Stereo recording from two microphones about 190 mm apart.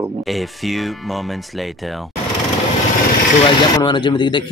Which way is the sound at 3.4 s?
25° left (ahead or behind).